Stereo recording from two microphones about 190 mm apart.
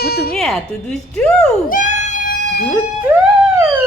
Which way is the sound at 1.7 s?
40° left (ahead or behind).